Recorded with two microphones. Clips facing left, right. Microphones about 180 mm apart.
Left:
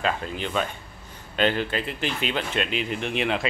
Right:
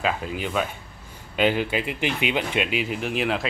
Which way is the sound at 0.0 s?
5° right (ahead or behind).